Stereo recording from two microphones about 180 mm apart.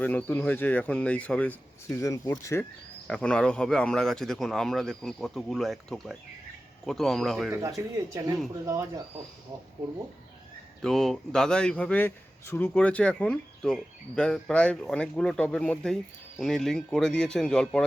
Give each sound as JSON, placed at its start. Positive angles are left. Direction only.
{"t": 0.0, "sound": "speech", "side_deg": 10}
{"t": 3.1, "sound": "a man's voice", "side_deg": 5}
{"t": 7.8, "sound": "speech", "side_deg": -15}
{"t": 10.8, "sound": "a man's voice", "side_deg": 0}